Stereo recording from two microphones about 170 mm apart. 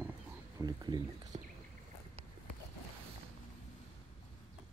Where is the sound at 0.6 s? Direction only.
25° right (ahead or behind).